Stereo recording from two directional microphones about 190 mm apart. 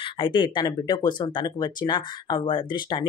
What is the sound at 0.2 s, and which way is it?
Speech, 25° left (ahead or behind).